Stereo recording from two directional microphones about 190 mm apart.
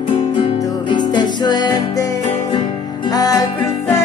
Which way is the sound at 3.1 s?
20° left (ahead or behind).